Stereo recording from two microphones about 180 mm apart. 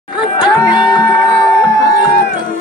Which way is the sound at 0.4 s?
25° left (ahead or behind).